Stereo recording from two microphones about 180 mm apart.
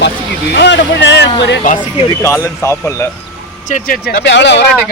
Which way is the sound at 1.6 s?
45° left (ahead or behind).